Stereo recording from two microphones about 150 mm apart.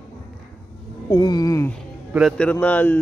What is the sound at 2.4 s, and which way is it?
Speech, 10° left (ahead or behind).